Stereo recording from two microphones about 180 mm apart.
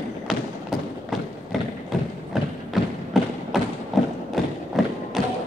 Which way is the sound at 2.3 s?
Centre (ahead or behind).